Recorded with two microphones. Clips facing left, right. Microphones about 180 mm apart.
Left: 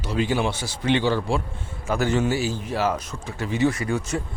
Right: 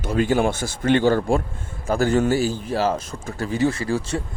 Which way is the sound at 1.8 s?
35° right (ahead or behind).